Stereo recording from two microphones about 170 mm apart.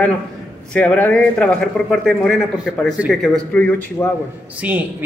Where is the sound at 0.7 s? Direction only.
10° left (ahead or behind).